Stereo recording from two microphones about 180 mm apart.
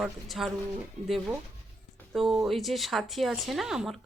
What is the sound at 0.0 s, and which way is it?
Speech, centre (ahead or behind).